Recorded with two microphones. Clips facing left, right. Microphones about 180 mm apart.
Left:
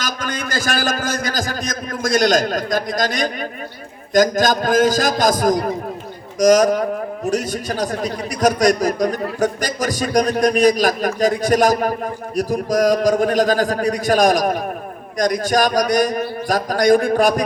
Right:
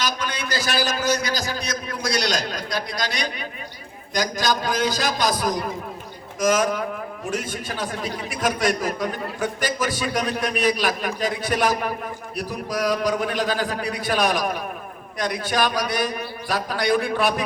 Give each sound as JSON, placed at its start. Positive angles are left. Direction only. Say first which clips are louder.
{"t": 0.0, "sound": "a man's voice", "louder": "left 2 dB", "side_deg": 45}